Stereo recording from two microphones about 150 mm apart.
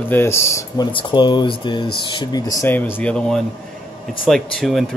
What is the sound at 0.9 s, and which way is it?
Speech, 30° left (ahead or behind).